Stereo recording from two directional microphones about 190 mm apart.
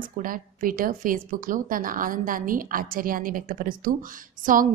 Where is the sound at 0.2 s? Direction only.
45° right (ahead or behind).